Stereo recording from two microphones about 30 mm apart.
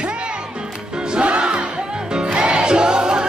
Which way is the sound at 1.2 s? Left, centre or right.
Right.